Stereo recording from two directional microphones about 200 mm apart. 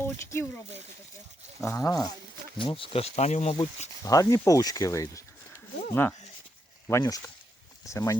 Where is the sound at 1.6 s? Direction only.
15° left (ahead or behind).